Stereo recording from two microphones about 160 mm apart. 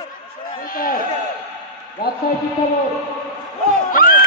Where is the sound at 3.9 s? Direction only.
60° left (ahead or behind).